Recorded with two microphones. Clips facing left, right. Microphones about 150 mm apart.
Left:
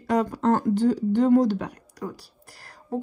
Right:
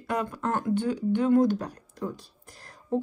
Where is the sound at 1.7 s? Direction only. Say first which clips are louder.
Even; 25° right (ahead or behind).